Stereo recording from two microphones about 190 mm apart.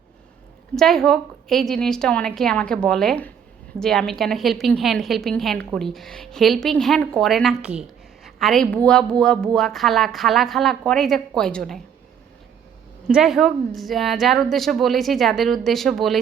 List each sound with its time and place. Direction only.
0.8 s a woman's voice: centre (ahead or behind)
13.1 s a woman's voice: 5° right (ahead or behind)